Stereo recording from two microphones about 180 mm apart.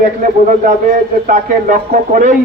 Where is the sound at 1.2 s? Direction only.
45° right (ahead or behind).